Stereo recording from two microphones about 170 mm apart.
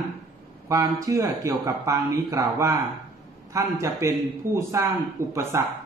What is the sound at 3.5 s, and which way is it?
A man's voice, 20° right (ahead or behind).